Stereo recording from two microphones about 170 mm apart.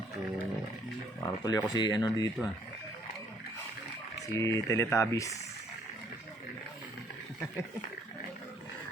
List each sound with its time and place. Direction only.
1.2 s speech: 20° left (ahead or behind)
4.3 s speech: 20° left (ahead or behind)